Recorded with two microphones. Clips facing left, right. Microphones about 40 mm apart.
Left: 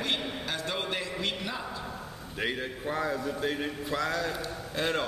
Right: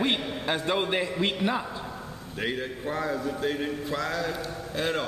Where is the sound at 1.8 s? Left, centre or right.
Centre.